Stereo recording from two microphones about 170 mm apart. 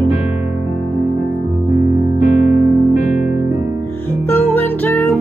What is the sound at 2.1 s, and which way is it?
Music, 45° left (ahead or behind).